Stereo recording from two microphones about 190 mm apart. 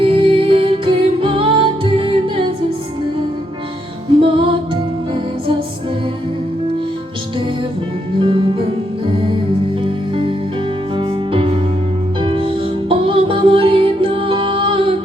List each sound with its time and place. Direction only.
0.0 s music: 30° right (ahead or behind)
4.2 s music: 25° right (ahead or behind)
8.2 s music: 25° right (ahead or behind)
10.9 s music: 30° right (ahead or behind)